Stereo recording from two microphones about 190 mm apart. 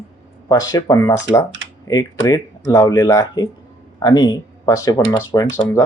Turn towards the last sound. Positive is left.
turn(degrees=15)  # may be behind; listen again after turning